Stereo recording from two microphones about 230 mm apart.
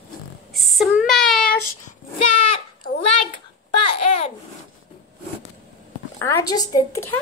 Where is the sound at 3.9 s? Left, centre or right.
Left.